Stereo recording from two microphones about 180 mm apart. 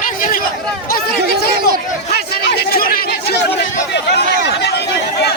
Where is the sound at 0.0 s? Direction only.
50° left (ahead or behind).